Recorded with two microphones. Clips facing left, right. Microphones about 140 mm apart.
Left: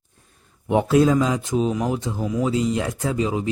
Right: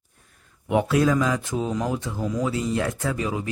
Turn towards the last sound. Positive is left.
turn(degrees=20)  # may be behind; listen again after turning